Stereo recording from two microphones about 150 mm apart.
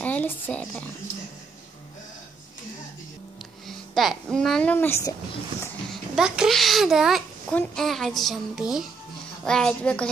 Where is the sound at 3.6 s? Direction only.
Centre (ahead or behind); by 5.1 s 15° left (ahead or behind).